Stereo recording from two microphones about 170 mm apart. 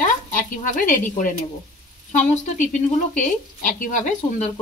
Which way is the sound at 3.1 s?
45° left (ahead or behind).